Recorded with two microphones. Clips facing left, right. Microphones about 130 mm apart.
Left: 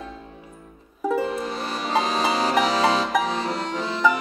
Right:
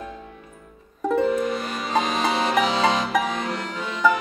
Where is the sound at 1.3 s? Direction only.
35° left (ahead or behind).